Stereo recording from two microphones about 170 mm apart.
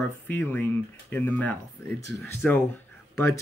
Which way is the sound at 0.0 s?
10° left (ahead or behind).